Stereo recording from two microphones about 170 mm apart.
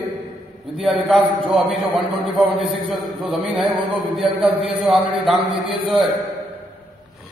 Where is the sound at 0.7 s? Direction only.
Centre (ahead or behind).